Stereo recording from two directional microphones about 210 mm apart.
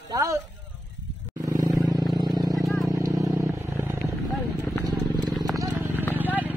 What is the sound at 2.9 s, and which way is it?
Vehicle, 15° right (ahead or behind).